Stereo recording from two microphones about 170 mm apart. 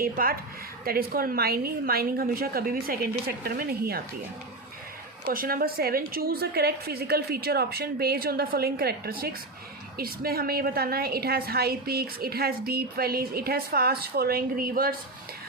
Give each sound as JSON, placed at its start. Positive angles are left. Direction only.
{"t": 0.0, "sound": "a woman's voice", "side_deg": -60}
{"t": 5.2, "sound": "a woman's voice", "side_deg": -60}